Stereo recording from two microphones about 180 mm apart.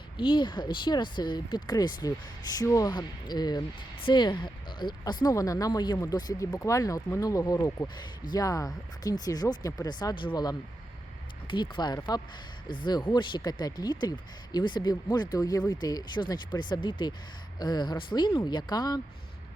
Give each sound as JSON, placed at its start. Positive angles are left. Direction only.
{"t": 0.2, "sound": "speech", "side_deg": 25}